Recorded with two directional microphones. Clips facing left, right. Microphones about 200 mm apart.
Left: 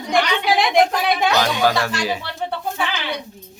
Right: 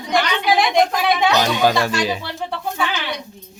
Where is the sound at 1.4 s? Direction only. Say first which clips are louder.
Right 2 dB; 20° right (ahead or behind).